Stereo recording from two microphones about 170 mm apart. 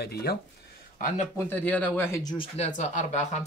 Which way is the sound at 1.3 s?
10° left (ahead or behind).